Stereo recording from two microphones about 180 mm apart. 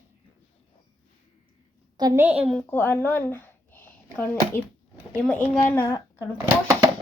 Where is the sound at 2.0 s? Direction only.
20° right (ahead or behind).